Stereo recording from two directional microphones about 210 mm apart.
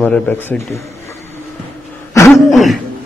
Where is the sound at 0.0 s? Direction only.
10° left (ahead or behind).